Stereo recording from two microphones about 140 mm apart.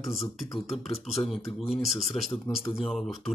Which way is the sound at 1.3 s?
Centre (ahead or behind).